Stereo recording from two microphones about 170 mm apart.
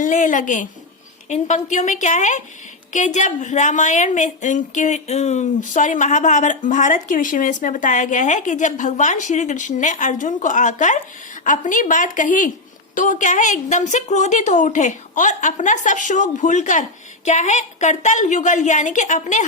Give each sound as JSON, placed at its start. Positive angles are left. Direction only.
{"t": 0.0, "sound": "a woman's voice", "side_deg": 50}